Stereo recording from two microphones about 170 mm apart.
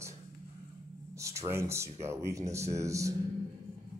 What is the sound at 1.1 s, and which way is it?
Speech, 20° right (ahead or behind).